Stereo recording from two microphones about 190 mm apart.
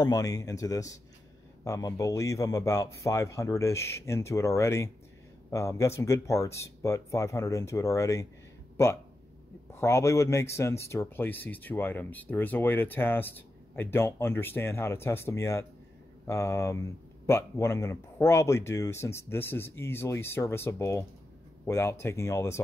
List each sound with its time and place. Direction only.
0.0 s speech: 20° left (ahead or behind)
9.7 s speech: 15° left (ahead or behind)